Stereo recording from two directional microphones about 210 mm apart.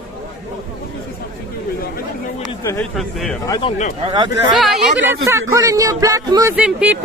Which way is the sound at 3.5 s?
25° left (ahead or behind).